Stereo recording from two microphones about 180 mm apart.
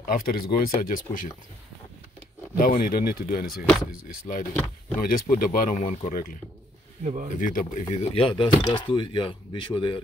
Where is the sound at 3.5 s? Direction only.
Centre (ahead or behind).